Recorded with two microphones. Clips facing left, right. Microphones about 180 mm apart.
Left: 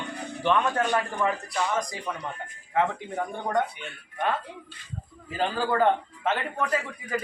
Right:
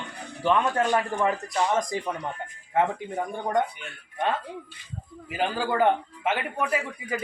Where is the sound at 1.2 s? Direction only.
25° right (ahead or behind).